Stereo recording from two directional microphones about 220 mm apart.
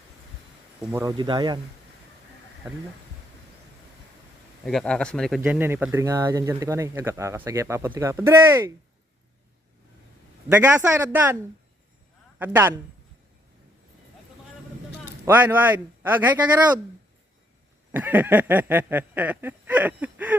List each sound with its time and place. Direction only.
0.8 s speech: 5° right (ahead or behind)
1.0 s speech: 20° right (ahead or behind)
4.6 s speech: centre (ahead or behind)
10.5 s speech: 10° right (ahead or behind)
12.4 s speech: 10° right (ahead or behind)
15.2 s speech: 10° right (ahead or behind)
17.9 s speech: 10° right (ahead or behind)